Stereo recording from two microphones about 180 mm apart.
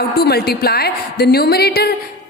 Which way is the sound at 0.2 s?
60° left (ahead or behind).